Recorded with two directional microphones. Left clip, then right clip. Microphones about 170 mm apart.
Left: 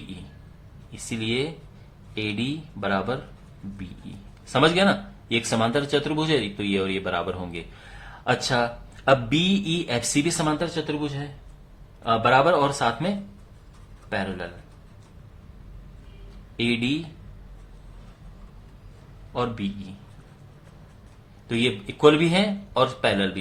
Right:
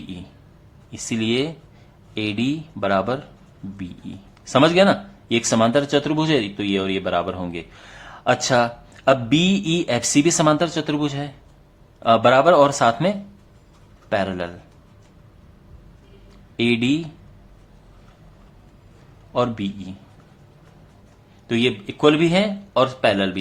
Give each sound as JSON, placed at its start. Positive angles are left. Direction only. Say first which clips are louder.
{"t": 0.9, "sound": "speech", "louder": "right 5 dB", "side_deg": -35}
{"t": 4.5, "sound": "speech", "louder": "right 5 dB", "side_deg": -35}
{"t": 16.6, "sound": "speech", "louder": "right 5 dB", "side_deg": -35}
{"t": 19.3, "sound": "speech", "louder": "right 6 dB", "side_deg": -35}
{"t": 21.4, "sound": "speech", "louder": "right 4 dB", "side_deg": -35}